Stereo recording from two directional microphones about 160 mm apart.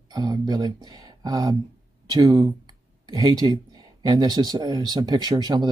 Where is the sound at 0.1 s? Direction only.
25° right (ahead or behind).